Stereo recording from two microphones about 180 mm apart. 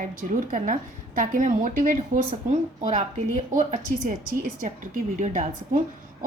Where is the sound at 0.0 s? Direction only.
50° right (ahead or behind).